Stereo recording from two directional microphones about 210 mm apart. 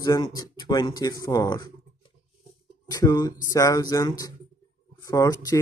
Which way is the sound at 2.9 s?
20° left (ahead or behind).